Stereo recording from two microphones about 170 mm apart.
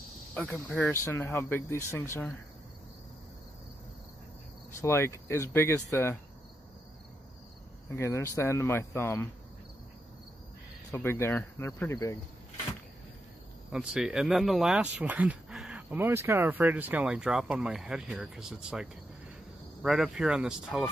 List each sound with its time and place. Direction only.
0.3 s speech: 10° left (ahead or behind)
4.8 s speech: 15° left (ahead or behind)
7.9 s speech: 15° left (ahead or behind)
10.9 s speech: 15° left (ahead or behind)
13.7 s speech: 5° right (ahead or behind)